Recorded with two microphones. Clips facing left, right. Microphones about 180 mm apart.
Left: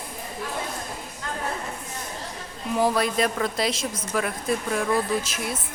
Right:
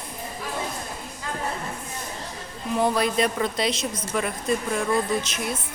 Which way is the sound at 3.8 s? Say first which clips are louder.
Right 1 dB; 50° left (ahead or behind).